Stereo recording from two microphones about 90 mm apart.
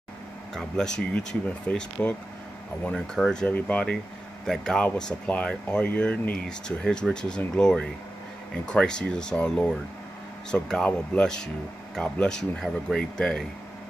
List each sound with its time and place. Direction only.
0.6 s speech: 5° left (ahead or behind)
4.5 s speech: 5° left (ahead or behind)